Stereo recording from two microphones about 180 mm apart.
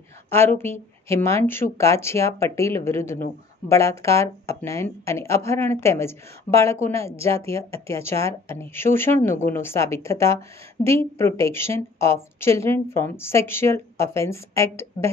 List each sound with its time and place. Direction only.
0.3 s a woman's voice: 15° left (ahead or behind)